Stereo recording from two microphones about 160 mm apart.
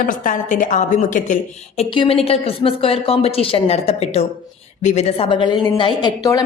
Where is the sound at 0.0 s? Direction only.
55° left (ahead or behind).